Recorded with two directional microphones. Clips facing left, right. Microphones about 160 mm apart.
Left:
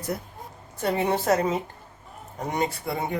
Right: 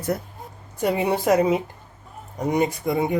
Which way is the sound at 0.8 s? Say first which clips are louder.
Right 3 dB; 10° right (ahead or behind).